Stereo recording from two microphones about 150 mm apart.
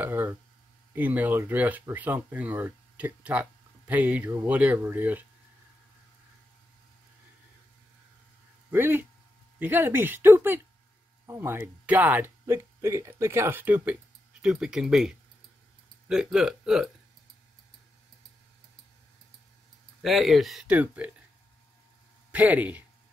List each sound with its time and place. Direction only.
0.0 s speech: 15° right (ahead or behind)
8.6 s speech: 15° right (ahead or behind)
20.0 s speech: centre (ahead or behind)
22.3 s speech: 10° right (ahead or behind)